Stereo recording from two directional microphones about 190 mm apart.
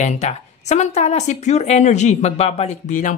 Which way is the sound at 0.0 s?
35° left (ahead or behind).